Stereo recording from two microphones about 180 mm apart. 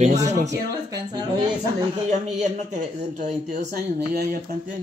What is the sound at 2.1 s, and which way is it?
Speech, 40° right (ahead or behind).